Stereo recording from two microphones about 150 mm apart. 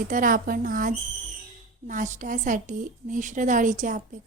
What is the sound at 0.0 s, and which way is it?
A woman's voice, 65° right (ahead or behind).